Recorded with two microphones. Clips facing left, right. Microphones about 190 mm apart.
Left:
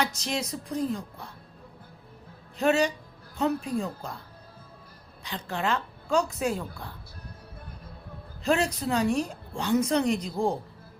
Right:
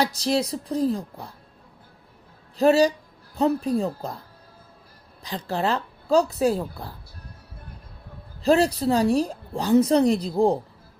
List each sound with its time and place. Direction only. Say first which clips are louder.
0.0 s a woman's voice: right 7 dB; 35° right (ahead or behind)
2.6 s a woman's voice: right 6 dB; 35° right (ahead or behind)
5.2 s a woman's voice: right 5 dB; 35° right (ahead or behind)
8.4 s a woman's voice: right 6 dB; 35° right (ahead or behind)